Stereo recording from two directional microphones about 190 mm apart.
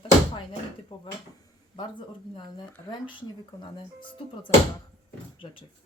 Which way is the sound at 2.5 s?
25° left (ahead or behind).